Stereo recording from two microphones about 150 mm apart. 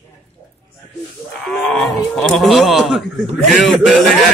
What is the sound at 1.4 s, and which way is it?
Speech, 5° left (ahead or behind).